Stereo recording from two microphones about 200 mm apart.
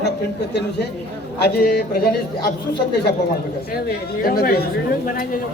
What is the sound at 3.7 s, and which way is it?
A man's voice, 50° left (ahead or behind).